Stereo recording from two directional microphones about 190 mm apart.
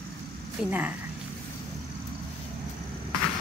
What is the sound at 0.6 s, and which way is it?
Speech, 10° right (ahead or behind).